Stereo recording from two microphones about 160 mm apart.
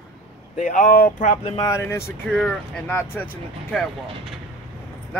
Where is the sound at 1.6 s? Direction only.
15° left (ahead or behind).